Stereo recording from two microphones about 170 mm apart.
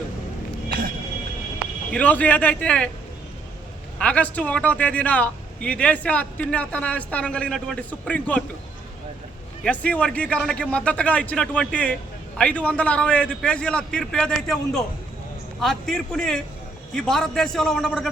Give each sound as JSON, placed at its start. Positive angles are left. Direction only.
{"t": 1.9, "sound": "a man's voice", "side_deg": 10}
{"t": 3.9, "sound": "a man's voice", "side_deg": 10}
{"t": 9.6, "sound": "a man's voice", "side_deg": 10}